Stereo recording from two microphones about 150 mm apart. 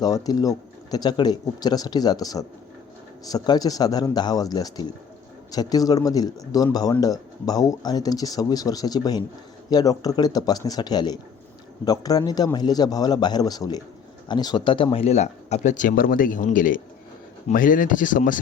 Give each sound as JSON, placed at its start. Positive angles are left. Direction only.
{"t": 0.0, "sound": "speech", "side_deg": 25}